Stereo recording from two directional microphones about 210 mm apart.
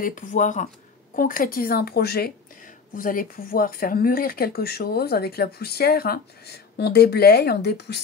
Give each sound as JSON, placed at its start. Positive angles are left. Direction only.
{"t": 0.0, "sound": "speech", "side_deg": 40}